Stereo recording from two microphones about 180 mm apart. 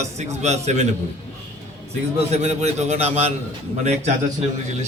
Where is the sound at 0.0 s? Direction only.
40° right (ahead or behind).